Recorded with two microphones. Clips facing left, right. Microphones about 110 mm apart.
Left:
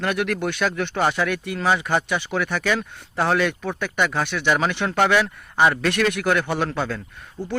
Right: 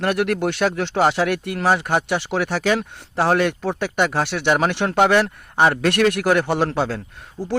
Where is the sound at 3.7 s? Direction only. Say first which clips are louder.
Right 1 dB; 70° right (ahead or behind).